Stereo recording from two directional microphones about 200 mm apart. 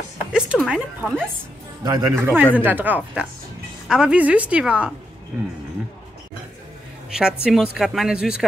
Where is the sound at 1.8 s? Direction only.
20° right (ahead or behind).